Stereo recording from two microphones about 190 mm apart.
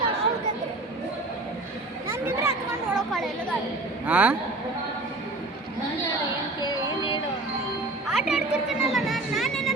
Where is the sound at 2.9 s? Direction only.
Centre (ahead or behind).